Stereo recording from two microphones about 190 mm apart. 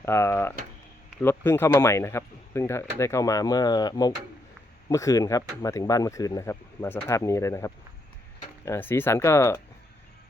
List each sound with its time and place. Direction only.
0.0 s speech: 15° left (ahead or behind)